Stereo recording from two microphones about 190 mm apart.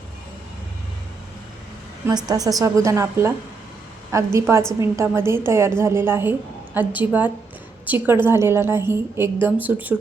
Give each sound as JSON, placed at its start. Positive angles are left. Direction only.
{"t": 2.0, "sound": "a woman's voice", "side_deg": -20}